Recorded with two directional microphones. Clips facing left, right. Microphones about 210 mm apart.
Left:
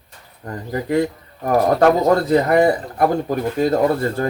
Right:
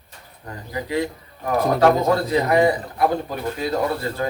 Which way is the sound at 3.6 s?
45° left (ahead or behind).